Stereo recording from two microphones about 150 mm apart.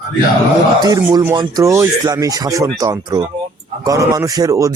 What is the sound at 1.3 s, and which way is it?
Speech, 25° right (ahead or behind).